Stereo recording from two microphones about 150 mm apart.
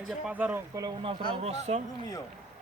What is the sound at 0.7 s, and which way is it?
Speech, 25° right (ahead or behind).